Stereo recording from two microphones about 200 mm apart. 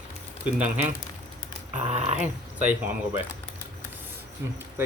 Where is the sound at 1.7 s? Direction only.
35° right (ahead or behind).